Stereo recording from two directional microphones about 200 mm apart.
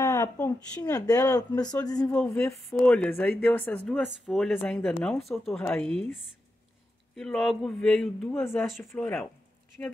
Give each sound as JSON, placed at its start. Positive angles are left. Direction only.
{"t": 0.0, "sound": "speech", "side_deg": 15}
{"t": 2.0, "sound": "speech", "side_deg": 5}
{"t": 7.2, "sound": "speech", "side_deg": 0}